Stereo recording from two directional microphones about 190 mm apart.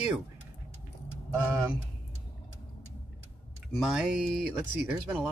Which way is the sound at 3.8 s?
5° right (ahead or behind).